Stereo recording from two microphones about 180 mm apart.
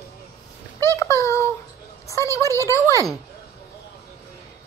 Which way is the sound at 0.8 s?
15° left (ahead or behind).